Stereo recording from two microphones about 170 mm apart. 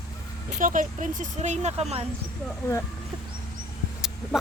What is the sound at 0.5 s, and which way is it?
Speech, 50° right (ahead or behind).